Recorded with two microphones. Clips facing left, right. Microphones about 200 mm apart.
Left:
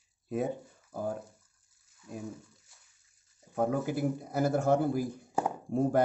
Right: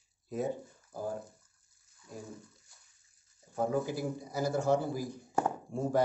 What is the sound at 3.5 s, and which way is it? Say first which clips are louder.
Speech: left 2 dB; 60° left (ahead or behind).